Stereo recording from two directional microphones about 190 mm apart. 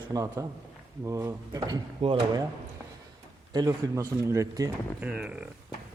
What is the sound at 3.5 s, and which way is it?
Speech, 20° right (ahead or behind).